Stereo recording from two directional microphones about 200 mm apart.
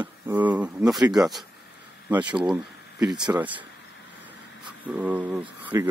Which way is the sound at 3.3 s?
5° right (ahead or behind).